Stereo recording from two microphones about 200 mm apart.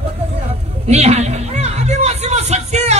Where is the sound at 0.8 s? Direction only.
35° right (ahead or behind).